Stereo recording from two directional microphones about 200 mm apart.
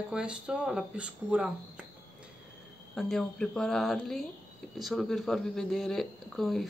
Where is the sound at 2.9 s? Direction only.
Centre (ahead or behind).